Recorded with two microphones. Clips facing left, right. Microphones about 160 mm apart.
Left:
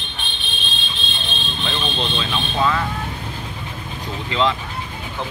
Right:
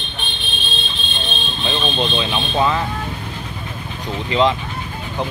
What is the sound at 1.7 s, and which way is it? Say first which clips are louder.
Speech: right 5 dB; 10° right (ahead or behind).